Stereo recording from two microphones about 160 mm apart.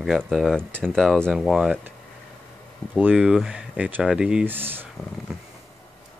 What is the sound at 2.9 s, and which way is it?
Speech, 5° right (ahead or behind).